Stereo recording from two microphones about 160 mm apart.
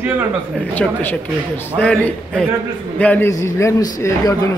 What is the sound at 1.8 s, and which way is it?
A man's voice, 10° left (ahead or behind).